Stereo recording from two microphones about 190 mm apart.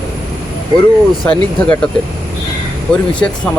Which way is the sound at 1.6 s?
5° left (ahead or behind).